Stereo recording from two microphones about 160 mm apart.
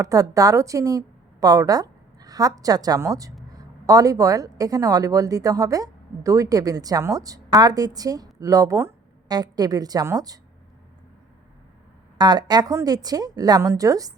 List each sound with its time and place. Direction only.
0.0 s speech: 20° right (ahead or behind)
12.1 s speech: 25° right (ahead or behind)